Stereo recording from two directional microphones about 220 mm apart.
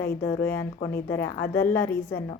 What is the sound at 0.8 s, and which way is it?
Speech, 45° left (ahead or behind).